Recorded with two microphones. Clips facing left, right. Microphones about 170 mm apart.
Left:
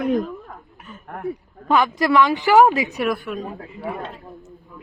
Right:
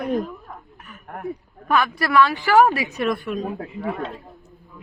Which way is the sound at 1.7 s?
20° left (ahead or behind).